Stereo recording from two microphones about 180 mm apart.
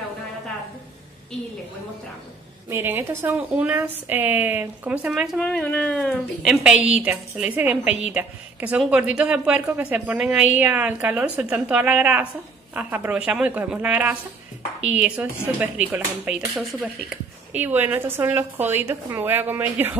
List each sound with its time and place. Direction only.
2.7 s speech: 10° right (ahead or behind)
7.8 s a woman's voice: 40° left (ahead or behind)
8.1 s speech: 10° right (ahead or behind)